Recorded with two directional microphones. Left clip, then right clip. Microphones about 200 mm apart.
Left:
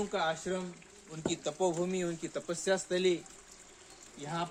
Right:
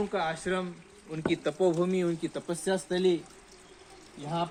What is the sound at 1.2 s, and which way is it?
Speech, 35° right (ahead or behind).